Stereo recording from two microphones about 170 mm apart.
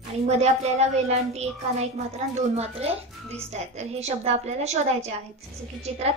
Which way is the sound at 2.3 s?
40° right (ahead or behind).